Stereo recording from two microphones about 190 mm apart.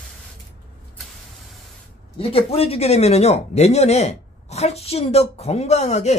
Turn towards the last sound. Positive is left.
turn(degrees=35)  # may be behind; listen again after turning